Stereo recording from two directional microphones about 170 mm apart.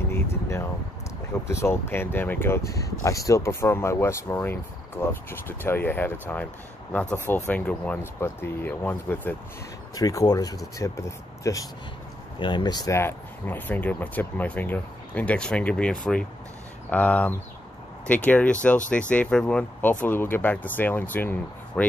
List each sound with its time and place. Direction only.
0.1 s speech: 15° left (ahead or behind)